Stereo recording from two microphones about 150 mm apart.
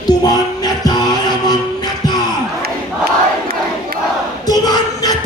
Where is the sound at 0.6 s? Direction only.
25° left (ahead or behind).